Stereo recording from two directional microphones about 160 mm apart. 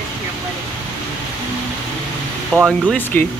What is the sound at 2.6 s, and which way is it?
Speech, 10° left (ahead or behind).